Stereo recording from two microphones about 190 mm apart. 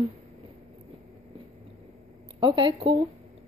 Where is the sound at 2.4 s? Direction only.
25° right (ahead or behind).